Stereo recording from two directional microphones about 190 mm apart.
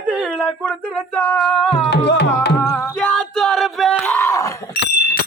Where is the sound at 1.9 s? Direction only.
65° left (ahead or behind).